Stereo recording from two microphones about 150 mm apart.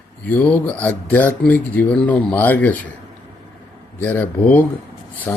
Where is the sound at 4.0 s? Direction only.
10° left (ahead or behind).